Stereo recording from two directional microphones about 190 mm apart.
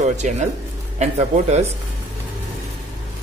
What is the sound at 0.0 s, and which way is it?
Speech, 35° right (ahead or behind).